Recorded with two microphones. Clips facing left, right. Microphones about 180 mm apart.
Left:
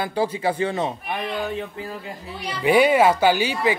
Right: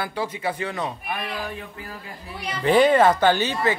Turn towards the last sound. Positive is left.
turn(degrees=10)  # may be behind; listen again after turning